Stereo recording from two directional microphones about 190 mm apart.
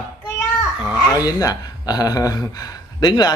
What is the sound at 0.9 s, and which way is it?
Speech, 20° left (ahead or behind).